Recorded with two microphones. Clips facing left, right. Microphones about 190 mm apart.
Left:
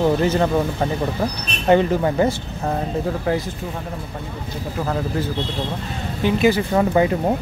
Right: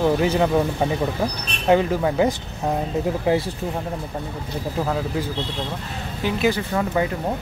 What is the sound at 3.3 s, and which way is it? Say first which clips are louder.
Speech: right 2 dB; 20° right (ahead or behind).